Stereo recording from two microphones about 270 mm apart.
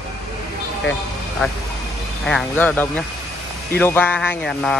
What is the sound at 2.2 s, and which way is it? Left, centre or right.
Speech, centre.